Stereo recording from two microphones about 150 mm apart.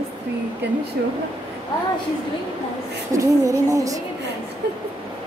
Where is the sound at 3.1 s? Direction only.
20° right (ahead or behind).